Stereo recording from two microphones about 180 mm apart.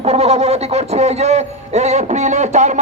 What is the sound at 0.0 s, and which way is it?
A man's voice, 35° right (ahead or behind).